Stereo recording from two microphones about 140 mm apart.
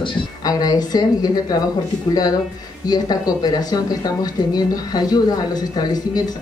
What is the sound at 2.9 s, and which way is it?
Speech, 30° left (ahead or behind).